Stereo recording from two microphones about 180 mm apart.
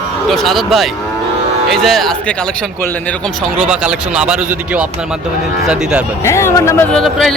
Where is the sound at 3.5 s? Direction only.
5° right (ahead or behind).